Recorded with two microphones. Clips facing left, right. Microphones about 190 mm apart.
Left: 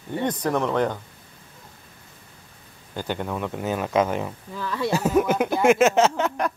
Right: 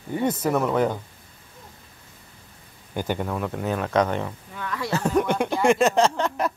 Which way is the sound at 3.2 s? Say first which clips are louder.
Right 1 dB; centre (ahead or behind).